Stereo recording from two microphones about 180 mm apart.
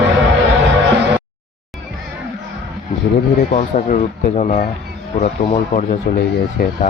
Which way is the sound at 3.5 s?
45° left (ahead or behind).